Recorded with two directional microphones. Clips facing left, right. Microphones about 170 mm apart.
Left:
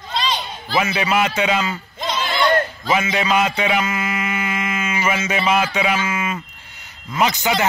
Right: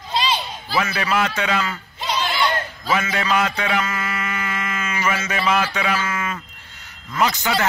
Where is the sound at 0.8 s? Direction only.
20° left (ahead or behind).